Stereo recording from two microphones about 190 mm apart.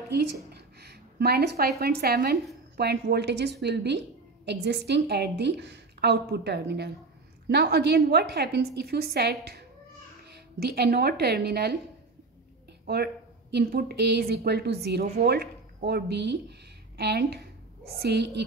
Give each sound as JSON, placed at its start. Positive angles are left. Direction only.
{"t": 0.1, "sound": "a woman's voice", "side_deg": -60}
{"t": 12.8, "sound": "speech", "side_deg": -60}